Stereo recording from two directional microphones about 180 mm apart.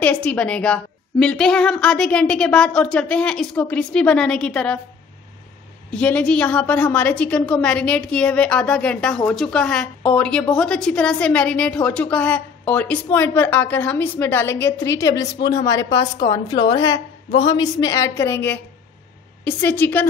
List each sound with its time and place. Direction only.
0.0 s a woman's voice: 5° left (ahead or behind)
5.9 s a woman's voice: 5° left (ahead or behind)